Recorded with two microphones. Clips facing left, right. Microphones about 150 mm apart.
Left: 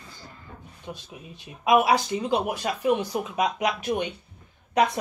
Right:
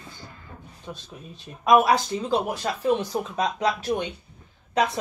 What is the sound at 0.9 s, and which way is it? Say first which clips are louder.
Speech: even; 10° left (ahead or behind).